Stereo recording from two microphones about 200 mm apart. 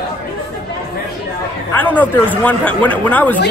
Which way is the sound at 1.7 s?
10° left (ahead or behind).